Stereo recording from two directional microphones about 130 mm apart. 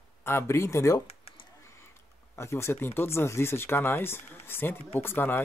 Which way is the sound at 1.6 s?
20° left (ahead or behind).